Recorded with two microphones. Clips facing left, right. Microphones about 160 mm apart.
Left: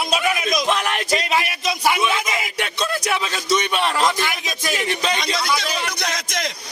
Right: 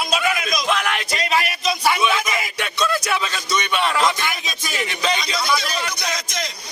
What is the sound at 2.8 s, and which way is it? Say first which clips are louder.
Speech: right 2 dB; 35° left (ahead or behind).